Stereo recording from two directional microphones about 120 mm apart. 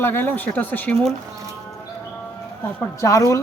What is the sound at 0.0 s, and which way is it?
Speech, 15° left (ahead or behind).